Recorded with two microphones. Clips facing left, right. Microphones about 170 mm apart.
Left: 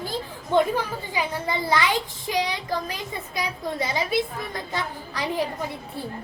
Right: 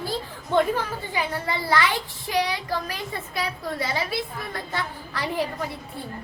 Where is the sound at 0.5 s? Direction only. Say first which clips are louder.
Left 1 dB; 15° left (ahead or behind).